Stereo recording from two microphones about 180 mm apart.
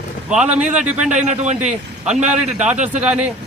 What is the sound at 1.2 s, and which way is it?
Speech, 40° right (ahead or behind).